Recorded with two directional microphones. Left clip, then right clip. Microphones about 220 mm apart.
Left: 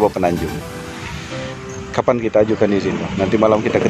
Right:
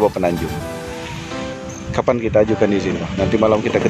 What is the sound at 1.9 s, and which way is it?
Speech, centre (ahead or behind).